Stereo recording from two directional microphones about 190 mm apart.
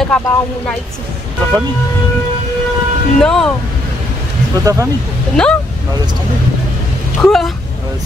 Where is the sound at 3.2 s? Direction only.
5° left (ahead or behind).